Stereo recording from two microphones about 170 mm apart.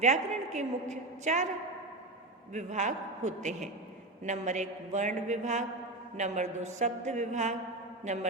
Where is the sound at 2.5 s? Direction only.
45° right (ahead or behind).